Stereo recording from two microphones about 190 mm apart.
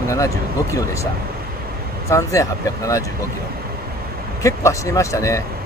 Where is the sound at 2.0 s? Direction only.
15° left (ahead or behind).